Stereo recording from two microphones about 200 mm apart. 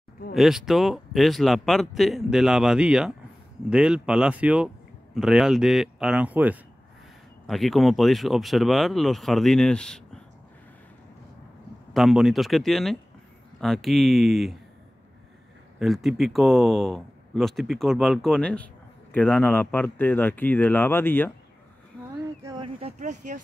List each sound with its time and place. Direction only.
0.3 s speech: centre (ahead or behind)
11.9 s speech: centre (ahead or behind)
15.8 s speech: centre (ahead or behind)
22.4 s a sound: 20° right (ahead or behind)
22.8 s speech: 35° right (ahead or behind)